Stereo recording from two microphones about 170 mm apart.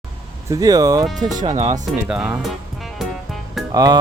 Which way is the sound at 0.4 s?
20° right (ahead or behind).